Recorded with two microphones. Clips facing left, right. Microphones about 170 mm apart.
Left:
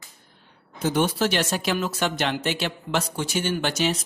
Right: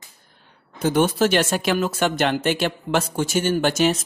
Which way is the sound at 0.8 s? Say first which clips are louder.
Right 4 dB; 50° right (ahead or behind).